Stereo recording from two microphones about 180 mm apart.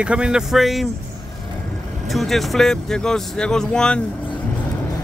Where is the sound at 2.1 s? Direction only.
Centre (ahead or behind).